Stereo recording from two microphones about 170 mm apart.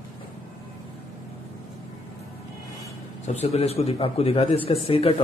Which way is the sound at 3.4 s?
35° left (ahead or behind).